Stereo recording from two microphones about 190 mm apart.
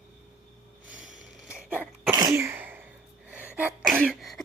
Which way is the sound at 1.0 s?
40° right (ahead or behind).